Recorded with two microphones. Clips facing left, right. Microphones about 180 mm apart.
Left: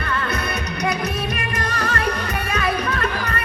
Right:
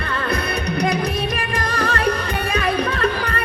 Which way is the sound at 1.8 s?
30° right (ahead or behind).